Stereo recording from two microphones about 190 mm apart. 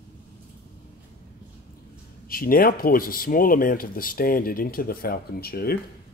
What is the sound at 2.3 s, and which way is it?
Speech, 50° left (ahead or behind).